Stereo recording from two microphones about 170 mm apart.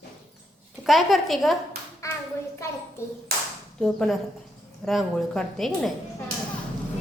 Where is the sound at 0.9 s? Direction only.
Centre (ahead or behind).